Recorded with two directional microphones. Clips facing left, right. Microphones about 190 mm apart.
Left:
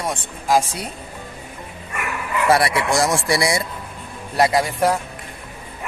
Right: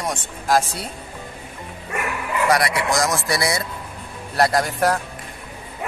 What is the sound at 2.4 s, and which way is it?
Speech, 30° left (ahead or behind).